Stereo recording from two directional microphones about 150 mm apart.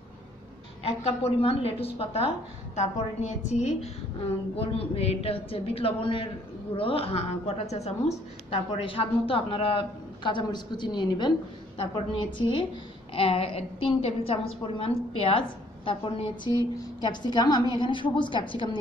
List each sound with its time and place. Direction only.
0.8 s a woman's voice: 45° left (ahead or behind)
4.6 s a woman's voice: 40° left (ahead or behind)